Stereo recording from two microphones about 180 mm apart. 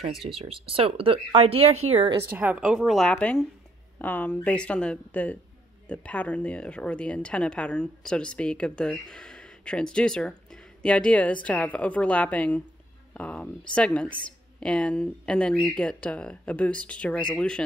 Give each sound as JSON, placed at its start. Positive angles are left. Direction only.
{"t": 0.1, "sound": "a woman's voice", "side_deg": 0}
{"t": 0.5, "sound": "speech", "side_deg": -30}
{"t": 2.3, "sound": "a woman's voice", "side_deg": -10}